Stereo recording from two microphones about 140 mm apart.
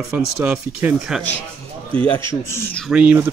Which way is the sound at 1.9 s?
40° right (ahead or behind).